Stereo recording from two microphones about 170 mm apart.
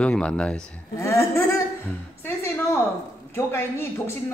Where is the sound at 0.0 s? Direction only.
5° left (ahead or behind).